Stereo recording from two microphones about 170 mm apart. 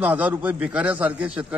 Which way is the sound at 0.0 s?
10° right (ahead or behind).